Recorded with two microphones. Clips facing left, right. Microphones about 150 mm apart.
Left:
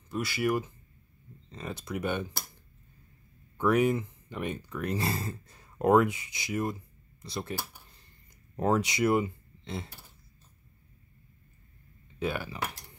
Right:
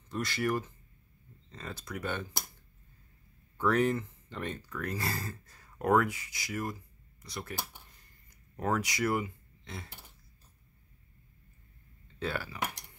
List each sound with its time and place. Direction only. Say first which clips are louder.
0.1 s speech: left 3 dB; 10° left (ahead or behind)
3.5 s speech: left 3 dB; 15° left (ahead or behind)
8.5 s speech: left 5 dB; 25° left (ahead or behind)
12.2 s speech: left 3 dB; 15° left (ahead or behind)